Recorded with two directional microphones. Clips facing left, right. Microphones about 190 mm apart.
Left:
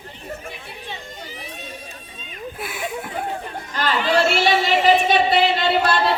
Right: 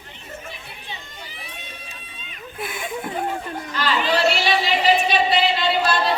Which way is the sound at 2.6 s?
5° left (ahead or behind).